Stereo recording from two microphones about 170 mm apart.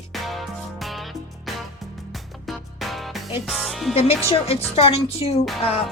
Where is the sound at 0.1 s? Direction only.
Centre (ahead or behind).